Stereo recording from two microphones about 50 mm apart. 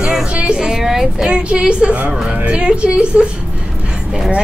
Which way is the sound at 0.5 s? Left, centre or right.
Centre.